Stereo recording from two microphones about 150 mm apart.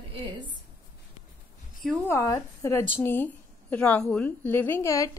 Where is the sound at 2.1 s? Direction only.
20° left (ahead or behind).